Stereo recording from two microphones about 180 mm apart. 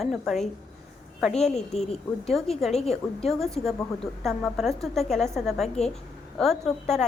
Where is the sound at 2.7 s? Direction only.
35° left (ahead or behind).